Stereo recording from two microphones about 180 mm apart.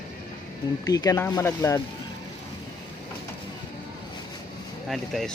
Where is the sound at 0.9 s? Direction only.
20° left (ahead or behind).